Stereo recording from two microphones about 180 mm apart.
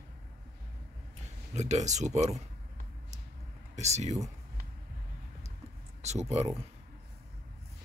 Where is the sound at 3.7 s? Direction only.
40° right (ahead or behind).